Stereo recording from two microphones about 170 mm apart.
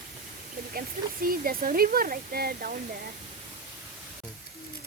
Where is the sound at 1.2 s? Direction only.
55° right (ahead or behind).